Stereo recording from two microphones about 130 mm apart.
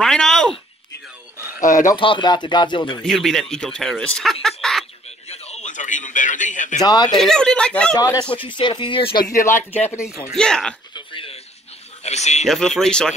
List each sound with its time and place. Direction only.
0.0 s a sound: 5° left (ahead or behind)
1.6 s speech: 80° left
2.0 s speech: 40° left (ahead or behind)
3.0 s speech: centre (ahead or behind)
5.3 s a sound: 60° left (ahead or behind)
6.8 s speech: 30° left (ahead or behind)
7.1 s speech: 5° left (ahead or behind)
7.9 s speech: 25° left (ahead or behind)
8.4 s speech: 40° left (ahead or behind)
9.2 s speech: 20° left (ahead or behind)
10.3 s speech: 5° left (ahead or behind)
11.0 s a sound: 40° left (ahead or behind)
12.0 s a sound: 60° left (ahead or behind)
12.4 s speech: 5° left (ahead or behind)